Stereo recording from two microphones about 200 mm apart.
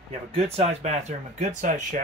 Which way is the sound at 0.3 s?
30° right (ahead or behind).